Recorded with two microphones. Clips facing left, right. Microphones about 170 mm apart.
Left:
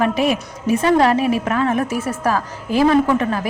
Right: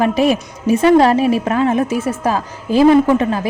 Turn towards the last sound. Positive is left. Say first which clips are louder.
# right 3 dB
turn(degrees=-25)  # may be behind; listen again after turning